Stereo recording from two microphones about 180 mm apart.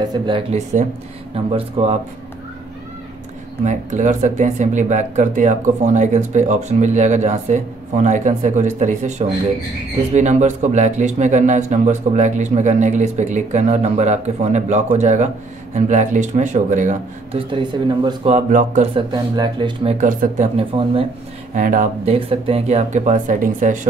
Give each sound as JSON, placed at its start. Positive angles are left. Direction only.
{"t": 0.0, "sound": "a man's voice", "side_deg": -25}
{"t": 3.6, "sound": "speech", "side_deg": -40}
{"t": 10.1, "sound": "speech", "side_deg": -40}
{"t": 17.3, "sound": "a man's voice", "side_deg": -30}
{"t": 18.3, "sound": "speech", "side_deg": -40}
{"t": 18.9, "sound": "a man's voice", "side_deg": -25}
{"t": 20.0, "sound": "speech", "side_deg": -45}
{"t": 20.5, "sound": "speech", "side_deg": -30}
{"t": 21.5, "sound": "speech", "side_deg": -45}